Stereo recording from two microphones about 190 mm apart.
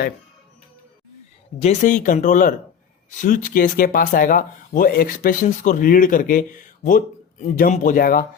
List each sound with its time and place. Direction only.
1.6 s speech: 40° left (ahead or behind)